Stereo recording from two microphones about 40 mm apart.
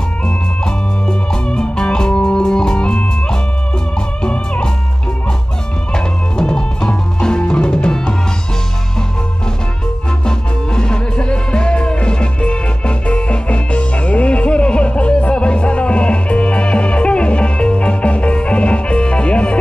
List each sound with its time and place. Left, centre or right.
0.7 s music: centre
5.9 s music: centre
10.2 s music: left